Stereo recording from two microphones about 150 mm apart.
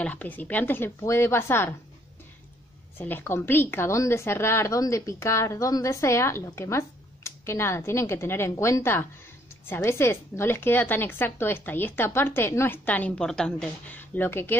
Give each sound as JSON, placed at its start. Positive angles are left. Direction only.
{"t": 0.0, "sound": "a woman's voice", "side_deg": 10}
{"t": 3.0, "sound": "a woman's voice", "side_deg": 15}